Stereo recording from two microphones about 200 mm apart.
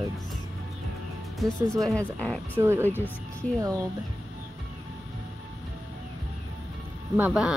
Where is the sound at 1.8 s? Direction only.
5° left (ahead or behind).